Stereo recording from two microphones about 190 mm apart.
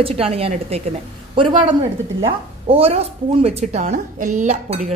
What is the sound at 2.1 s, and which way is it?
A woman's voice, 30° right (ahead or behind).